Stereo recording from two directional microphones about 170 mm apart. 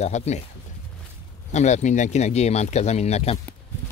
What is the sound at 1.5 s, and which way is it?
Speech, 45° left (ahead or behind).